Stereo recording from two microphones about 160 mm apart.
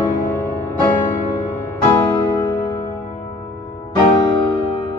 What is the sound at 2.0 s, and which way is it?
Music, 25° left (ahead or behind).